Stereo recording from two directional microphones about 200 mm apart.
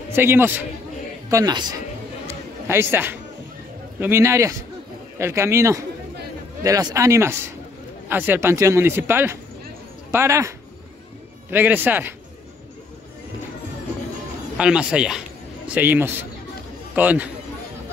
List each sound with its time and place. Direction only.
0.1 s a man's voice: 10° right (ahead or behind)
2.2 s music: 10° right (ahead or behind)
4.0 s speech: 15° right (ahead or behind)
11.5 s speech: 10° right (ahead or behind)
14.6 s a man's voice: 5° right (ahead or behind)